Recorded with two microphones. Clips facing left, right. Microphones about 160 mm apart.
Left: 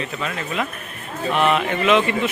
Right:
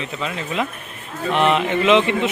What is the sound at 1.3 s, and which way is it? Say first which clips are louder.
Speech: right 2 dB; 25° right (ahead or behind).